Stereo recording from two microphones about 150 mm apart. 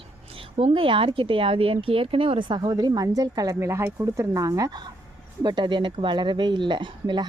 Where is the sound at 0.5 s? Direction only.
40° right (ahead or behind).